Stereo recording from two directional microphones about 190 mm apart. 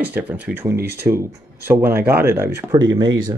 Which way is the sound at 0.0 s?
10° right (ahead or behind).